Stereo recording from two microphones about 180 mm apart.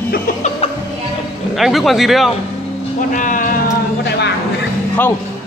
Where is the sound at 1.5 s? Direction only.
Centre (ahead or behind).